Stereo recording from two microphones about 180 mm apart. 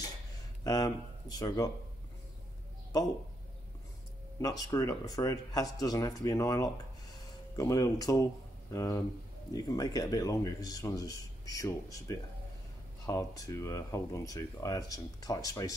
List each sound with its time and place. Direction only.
0.7 s speech: 20° left (ahead or behind)
4.4 s a man's voice: 20° left (ahead or behind)